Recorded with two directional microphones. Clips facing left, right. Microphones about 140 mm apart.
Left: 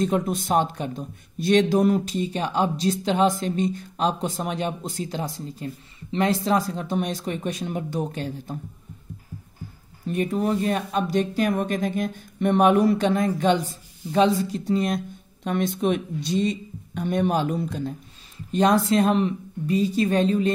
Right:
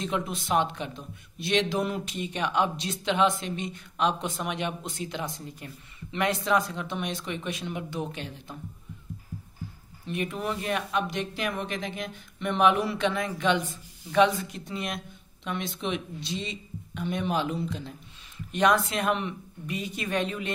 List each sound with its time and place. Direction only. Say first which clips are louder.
0.0 s speech: left 8 dB; 45° left (ahead or behind)
10.0 s speech: left 7 dB; 40° left (ahead or behind)
18.5 s speech: left 5 dB; 35° left (ahead or behind)